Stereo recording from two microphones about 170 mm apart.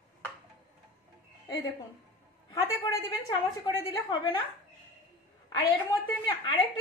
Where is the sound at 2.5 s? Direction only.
25° left (ahead or behind).